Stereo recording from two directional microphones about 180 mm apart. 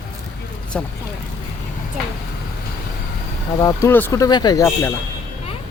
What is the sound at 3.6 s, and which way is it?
Speech, 15° left (ahead or behind).